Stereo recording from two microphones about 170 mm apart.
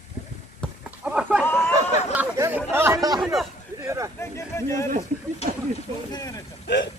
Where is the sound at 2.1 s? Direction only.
15° right (ahead or behind).